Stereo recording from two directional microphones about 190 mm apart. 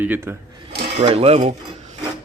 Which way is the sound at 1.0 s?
30° right (ahead or behind).